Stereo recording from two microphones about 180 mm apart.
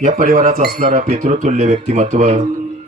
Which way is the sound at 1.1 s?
35° right (ahead or behind).